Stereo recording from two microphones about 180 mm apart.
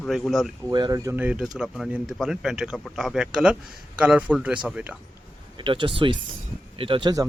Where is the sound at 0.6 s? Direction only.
20° right (ahead or behind).